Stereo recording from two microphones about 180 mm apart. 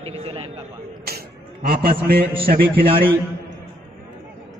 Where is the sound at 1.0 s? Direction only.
60° right (ahead or behind).